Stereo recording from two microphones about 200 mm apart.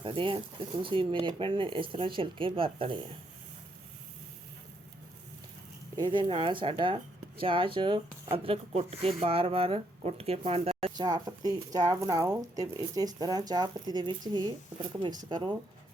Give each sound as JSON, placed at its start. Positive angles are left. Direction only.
{"t": 0.0, "sound": "speech", "side_deg": -25}
{"t": 6.0, "sound": "speech", "side_deg": -25}
{"t": 10.8, "sound": "speech", "side_deg": -20}